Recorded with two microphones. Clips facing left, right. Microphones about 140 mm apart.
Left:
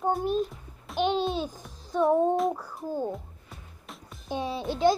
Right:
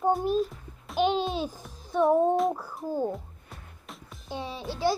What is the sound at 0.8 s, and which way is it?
Babbling, centre (ahead or behind).